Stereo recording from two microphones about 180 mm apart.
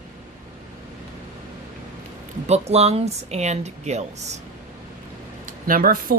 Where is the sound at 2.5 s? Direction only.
35° right (ahead or behind).